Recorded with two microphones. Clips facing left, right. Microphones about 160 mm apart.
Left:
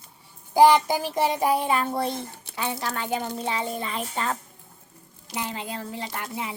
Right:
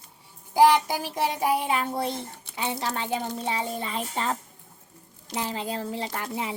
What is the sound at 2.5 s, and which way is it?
A child's voice, 20° right (ahead or behind).